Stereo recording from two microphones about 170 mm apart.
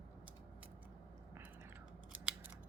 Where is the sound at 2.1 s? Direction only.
10° right (ahead or behind).